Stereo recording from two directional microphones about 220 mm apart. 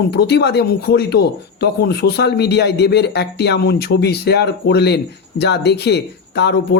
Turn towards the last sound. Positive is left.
turn(degrees=50)  # may be behind; listen again after turning